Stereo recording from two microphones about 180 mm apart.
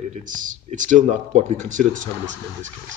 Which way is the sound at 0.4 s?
45° right (ahead or behind).